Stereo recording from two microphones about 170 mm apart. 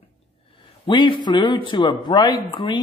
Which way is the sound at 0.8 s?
30° left (ahead or behind).